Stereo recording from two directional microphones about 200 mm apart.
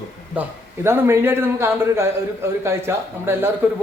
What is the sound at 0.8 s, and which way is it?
A man's voice, 10° right (ahead or behind).